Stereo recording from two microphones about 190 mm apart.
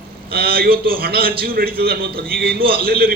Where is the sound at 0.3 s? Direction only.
55° right (ahead or behind).